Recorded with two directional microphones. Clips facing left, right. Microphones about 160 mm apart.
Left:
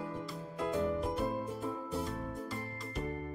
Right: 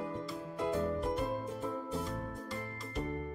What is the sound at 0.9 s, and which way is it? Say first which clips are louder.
Music: even; centre (ahead or behind).